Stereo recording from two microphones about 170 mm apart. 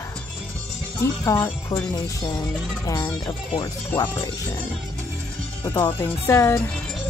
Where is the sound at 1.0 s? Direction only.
20° left (ahead or behind).